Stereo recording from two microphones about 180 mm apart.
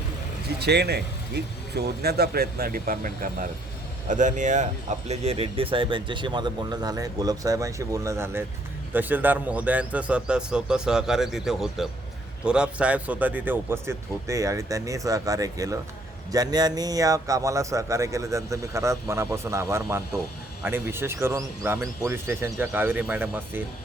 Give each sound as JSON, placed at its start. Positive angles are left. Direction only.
{"t": 0.6, "sound": "a man's voice", "side_deg": -65}